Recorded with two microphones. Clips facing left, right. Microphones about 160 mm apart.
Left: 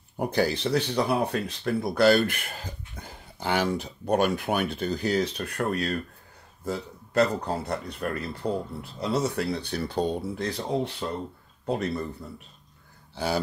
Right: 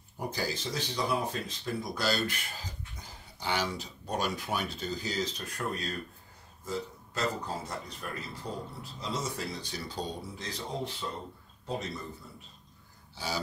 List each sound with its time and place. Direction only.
0.2 s speech: 65° left (ahead or behind)
13.1 s speech: 60° left (ahead or behind)